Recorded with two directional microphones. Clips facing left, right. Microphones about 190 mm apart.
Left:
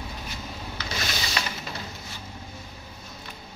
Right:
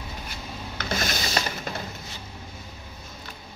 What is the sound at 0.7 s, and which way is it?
Rub, 45° right (ahead or behind).